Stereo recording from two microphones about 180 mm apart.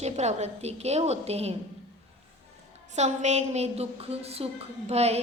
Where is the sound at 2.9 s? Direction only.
40° right (ahead or behind).